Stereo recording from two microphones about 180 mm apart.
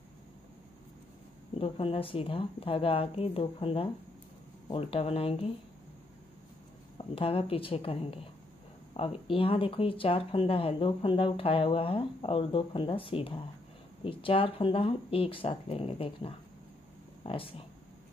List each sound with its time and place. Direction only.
1.6 s speech: 30° left (ahead or behind)
7.2 s speech: 30° left (ahead or behind)